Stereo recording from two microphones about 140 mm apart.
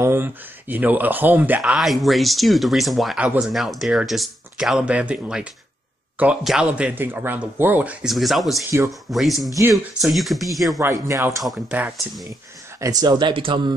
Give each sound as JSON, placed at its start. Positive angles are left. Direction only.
{"t": 0.0, "sound": "speech", "side_deg": -15}
{"t": 8.6, "sound": "speech", "side_deg": -20}
{"t": 9.1, "sound": "speech", "side_deg": 0}
{"t": 10.8, "sound": "speech", "side_deg": -20}
{"t": 11.4, "sound": "speech", "side_deg": -5}
{"t": 12.8, "sound": "speech", "side_deg": -30}